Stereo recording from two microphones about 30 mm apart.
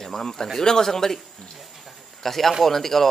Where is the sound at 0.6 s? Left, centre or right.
Centre.